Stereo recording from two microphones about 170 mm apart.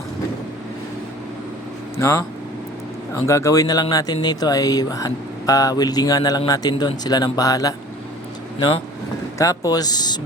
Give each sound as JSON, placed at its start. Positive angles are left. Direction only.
{"t": 2.0, "sound": "speech", "side_deg": 15}
{"t": 9.4, "sound": "speech", "side_deg": 20}